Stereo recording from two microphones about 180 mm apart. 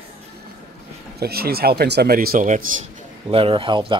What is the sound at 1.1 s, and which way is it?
Speech, 60° right (ahead or behind).